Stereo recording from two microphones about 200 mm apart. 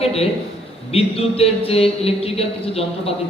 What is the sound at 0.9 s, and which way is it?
A man's voice, 30° left (ahead or behind).